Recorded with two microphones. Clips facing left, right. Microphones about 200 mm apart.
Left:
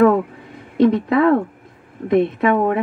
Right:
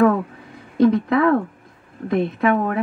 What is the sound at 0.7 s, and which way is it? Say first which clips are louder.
A woman's voice: left 1 dB; 25° left (ahead or behind).